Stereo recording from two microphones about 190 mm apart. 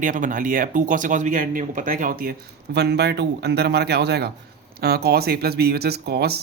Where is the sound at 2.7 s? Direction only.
60° right (ahead or behind).